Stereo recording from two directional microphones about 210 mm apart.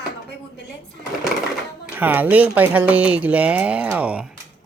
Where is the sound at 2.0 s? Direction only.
10° right (ahead or behind).